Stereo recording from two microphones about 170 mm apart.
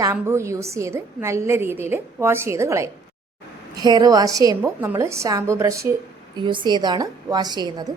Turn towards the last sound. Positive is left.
turn(degrees=-25)  # may be behind; listen again after turning